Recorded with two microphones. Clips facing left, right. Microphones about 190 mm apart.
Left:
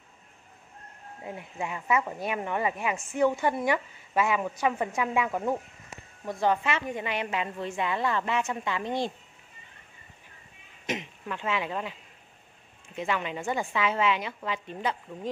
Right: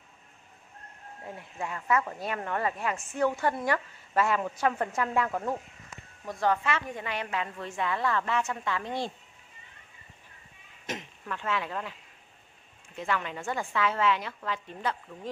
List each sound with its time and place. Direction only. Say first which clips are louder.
1.2 s a woman's voice: left 2 dB; 15° left (ahead or behind)
10.9 s speech: left 4 dB; 20° left (ahead or behind)
12.9 s speech: left 2 dB; 15° left (ahead or behind)